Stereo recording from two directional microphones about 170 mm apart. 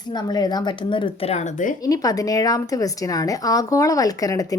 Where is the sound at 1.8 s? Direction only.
20° left (ahead or behind).